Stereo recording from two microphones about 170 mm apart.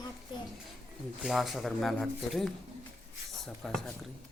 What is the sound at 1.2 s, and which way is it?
Speech, centre (ahead or behind).